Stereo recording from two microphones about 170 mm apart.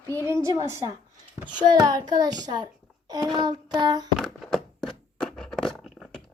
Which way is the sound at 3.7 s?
25° right (ahead or behind).